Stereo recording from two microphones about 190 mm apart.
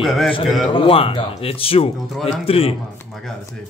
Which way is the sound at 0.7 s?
30° left (ahead or behind).